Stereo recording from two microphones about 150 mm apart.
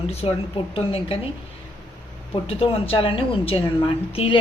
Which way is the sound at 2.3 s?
40° left (ahead or behind).